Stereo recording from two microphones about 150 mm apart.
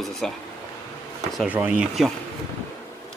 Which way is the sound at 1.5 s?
10° right (ahead or behind).